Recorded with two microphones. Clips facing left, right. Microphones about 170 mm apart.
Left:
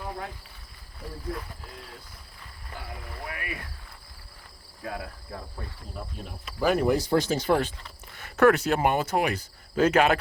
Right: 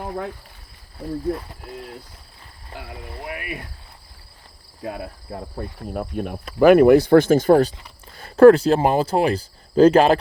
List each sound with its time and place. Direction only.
2.6 s speech: 30° right (ahead or behind)
4.8 s speech: 25° right (ahead or behind)
5.9 s speech: 60° right (ahead or behind); by 7.7 s 45° right (ahead or behind)
8.1 s speech: 30° right (ahead or behind)